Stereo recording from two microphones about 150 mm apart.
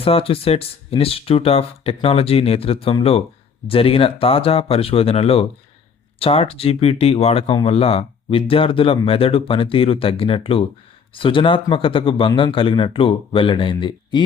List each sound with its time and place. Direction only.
0.0 s speech: 40° left (ahead or behind)